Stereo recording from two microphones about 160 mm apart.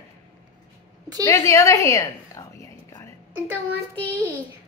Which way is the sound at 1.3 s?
20° left (ahead or behind).